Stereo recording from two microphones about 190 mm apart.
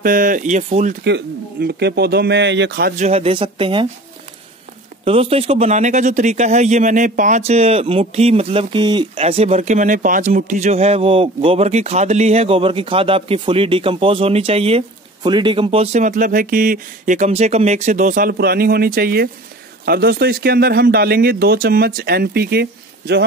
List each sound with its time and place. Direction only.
0.0 s speech: 45° right (ahead or behind)
1.0 s speech: 60° right (ahead or behind)
3.0 s speech: 35° right (ahead or behind)
5.0 s speech: 30° right (ahead or behind); by 23.2 s 60° right (ahead or behind)